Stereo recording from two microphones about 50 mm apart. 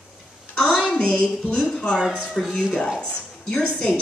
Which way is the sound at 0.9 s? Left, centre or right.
Left.